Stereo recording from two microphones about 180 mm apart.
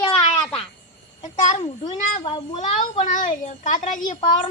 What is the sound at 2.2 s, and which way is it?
Speech, 30° left (ahead or behind).